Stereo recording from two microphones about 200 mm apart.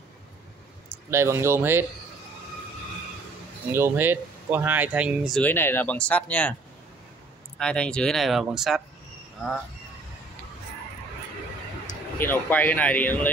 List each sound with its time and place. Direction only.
1.1 s speech: 15° right (ahead or behind)
3.7 s speech: 10° right (ahead or behind); by 6.5 s 5° left (ahead or behind)
7.5 s speech: 5° left (ahead or behind)
12.2 s speech: 10° left (ahead or behind)